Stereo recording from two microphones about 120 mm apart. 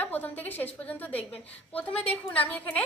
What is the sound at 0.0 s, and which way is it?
A woman's voice, 15° left (ahead or behind).